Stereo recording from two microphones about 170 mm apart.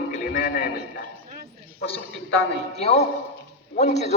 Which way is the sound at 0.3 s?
55° left (ahead or behind).